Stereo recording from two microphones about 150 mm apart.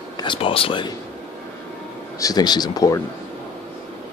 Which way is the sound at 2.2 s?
25° left (ahead or behind).